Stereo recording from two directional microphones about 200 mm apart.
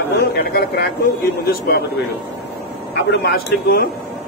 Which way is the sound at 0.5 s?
50° left (ahead or behind).